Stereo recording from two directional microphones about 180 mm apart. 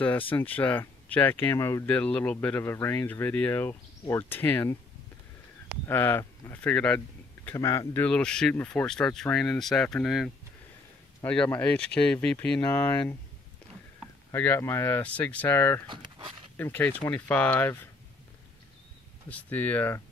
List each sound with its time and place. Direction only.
0.3 s speech: 10° left (ahead or behind)
5.9 s speech: 10° left (ahead or behind)
7.5 s speech: 20° left (ahead or behind)
14.3 s speech: 10° left (ahead or behind)
15.9 s speech: 25° right (ahead or behind)
16.5 s speech: 10° left (ahead or behind)
19.2 s speech: 10° left (ahead or behind)